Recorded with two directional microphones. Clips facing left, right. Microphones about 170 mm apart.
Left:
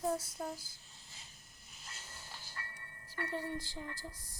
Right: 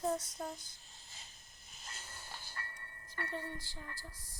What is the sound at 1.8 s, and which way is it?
Music, 50° right (ahead or behind).